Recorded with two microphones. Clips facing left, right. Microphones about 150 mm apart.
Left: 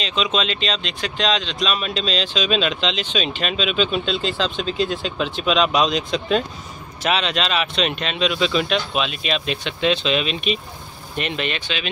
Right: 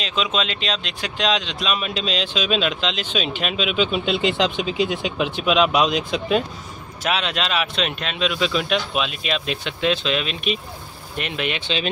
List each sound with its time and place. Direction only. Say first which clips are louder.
0.0 s speech: left 1 dB; 5° right (ahead or behind)
11.6 s speech: right 3 dB; 30° right (ahead or behind)